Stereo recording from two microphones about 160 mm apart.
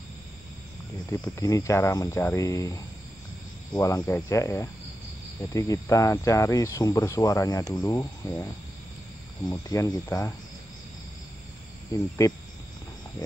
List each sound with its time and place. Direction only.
1.1 s speech: 20° left (ahead or behind)
3.8 s speech: 20° left (ahead or behind)
9.5 s speech: 25° left (ahead or behind)
11.9 s speech: 20° left (ahead or behind)